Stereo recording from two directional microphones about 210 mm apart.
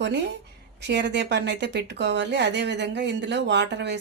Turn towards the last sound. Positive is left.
turn(degrees=-55)  # may be behind; listen again after turning